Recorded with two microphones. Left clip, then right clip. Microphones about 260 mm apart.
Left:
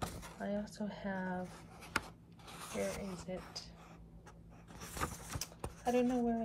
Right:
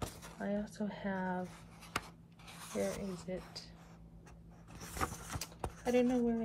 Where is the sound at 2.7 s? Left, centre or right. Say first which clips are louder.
Right 2 dB; centre.